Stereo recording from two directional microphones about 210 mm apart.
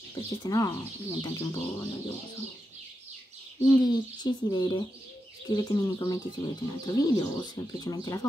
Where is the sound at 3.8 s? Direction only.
20° left (ahead or behind).